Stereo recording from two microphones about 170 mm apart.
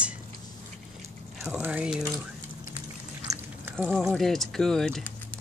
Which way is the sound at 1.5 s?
10° right (ahead or behind).